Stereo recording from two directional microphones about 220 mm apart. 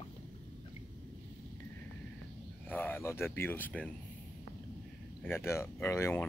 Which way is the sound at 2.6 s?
10° left (ahead or behind).